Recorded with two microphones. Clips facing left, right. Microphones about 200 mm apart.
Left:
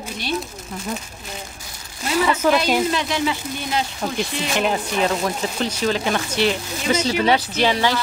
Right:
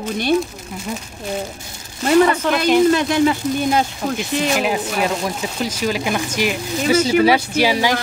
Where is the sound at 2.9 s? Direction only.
50° right (ahead or behind).